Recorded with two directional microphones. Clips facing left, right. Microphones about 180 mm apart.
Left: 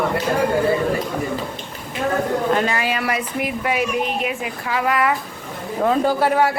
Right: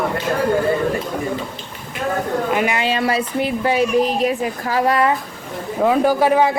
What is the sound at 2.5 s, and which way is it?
Speech, 10° right (ahead or behind).